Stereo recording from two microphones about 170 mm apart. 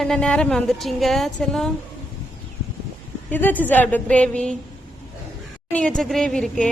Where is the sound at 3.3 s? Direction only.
10° left (ahead or behind).